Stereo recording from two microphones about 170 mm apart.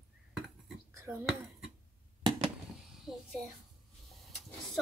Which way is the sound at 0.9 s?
15° right (ahead or behind).